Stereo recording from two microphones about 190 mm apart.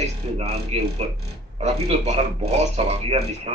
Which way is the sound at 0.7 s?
35° right (ahead or behind).